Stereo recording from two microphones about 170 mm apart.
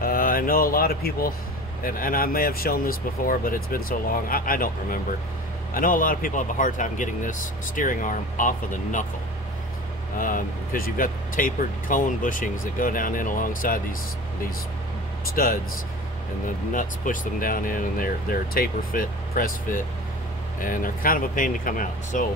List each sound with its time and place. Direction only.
0.0 s speech: 55° left (ahead or behind)
10.1 s speech: 55° left (ahead or behind)
15.2 s speech: 60° left (ahead or behind)
16.7 s speech: 50° left (ahead or behind)